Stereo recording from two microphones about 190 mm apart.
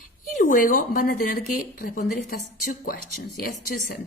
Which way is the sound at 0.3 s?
45° left (ahead or behind).